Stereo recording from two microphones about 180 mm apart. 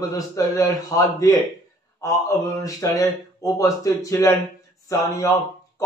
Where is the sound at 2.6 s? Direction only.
20° left (ahead or behind).